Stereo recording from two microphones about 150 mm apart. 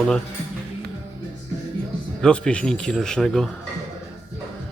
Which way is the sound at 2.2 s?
5° left (ahead or behind).